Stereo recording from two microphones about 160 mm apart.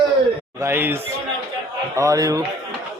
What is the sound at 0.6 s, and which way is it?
A man's voice, 15° right (ahead or behind).